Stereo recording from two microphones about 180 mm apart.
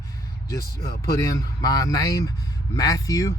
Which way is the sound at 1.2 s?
20° left (ahead or behind).